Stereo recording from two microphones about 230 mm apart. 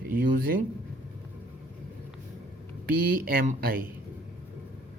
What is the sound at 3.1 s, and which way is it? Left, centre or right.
Speech, right.